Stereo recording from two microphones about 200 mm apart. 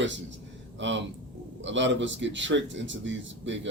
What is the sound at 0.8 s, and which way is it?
A man's voice, 65° right (ahead or behind).